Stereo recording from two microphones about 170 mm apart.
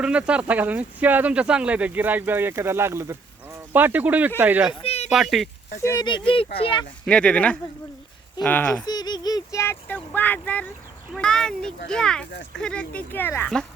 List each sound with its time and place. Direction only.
0.0 s speech: 5° right (ahead or behind)
4.7 s speech: 35° left (ahead or behind)
5.0 s speech: centre (ahead or behind)
5.8 s speech: 20° left (ahead or behind)
6.1 s speech: 30° left (ahead or behind)
7.0 s speech: 5° left (ahead or behind)
8.9 s speech: 25° left (ahead or behind); by 13.7 s 10° left (ahead or behind)